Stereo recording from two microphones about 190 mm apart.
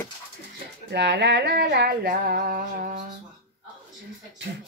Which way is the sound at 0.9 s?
65° right (ahead or behind).